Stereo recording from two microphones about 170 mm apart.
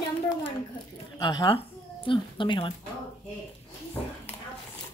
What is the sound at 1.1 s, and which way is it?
Speech, 25° left (ahead or behind).